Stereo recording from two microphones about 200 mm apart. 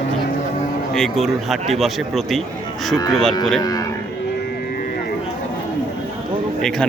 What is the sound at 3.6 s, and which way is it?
Speech, 20° left (ahead or behind).